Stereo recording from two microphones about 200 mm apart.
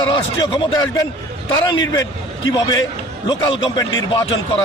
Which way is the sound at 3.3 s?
20° left (ahead or behind).